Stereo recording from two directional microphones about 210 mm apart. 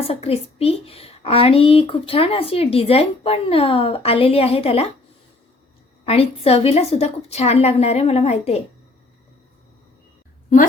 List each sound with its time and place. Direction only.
0.0 s a woman's voice: 25° left (ahead or behind)
6.1 s a woman's voice: 30° left (ahead or behind)